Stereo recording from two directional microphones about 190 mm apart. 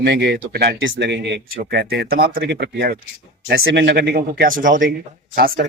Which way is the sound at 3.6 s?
70° right (ahead or behind).